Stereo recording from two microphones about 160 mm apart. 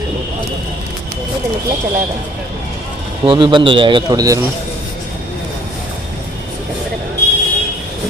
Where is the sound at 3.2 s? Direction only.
30° right (ahead or behind).